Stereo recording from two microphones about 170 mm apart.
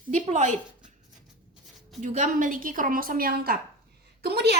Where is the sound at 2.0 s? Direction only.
45° right (ahead or behind); by 3.6 s 60° right (ahead or behind).